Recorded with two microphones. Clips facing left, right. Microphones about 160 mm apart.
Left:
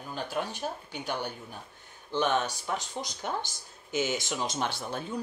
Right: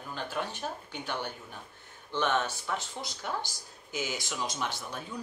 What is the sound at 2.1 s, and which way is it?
Speech, 15° left (ahead or behind).